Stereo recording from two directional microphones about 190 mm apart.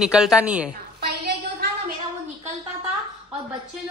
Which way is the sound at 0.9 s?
60° right (ahead or behind).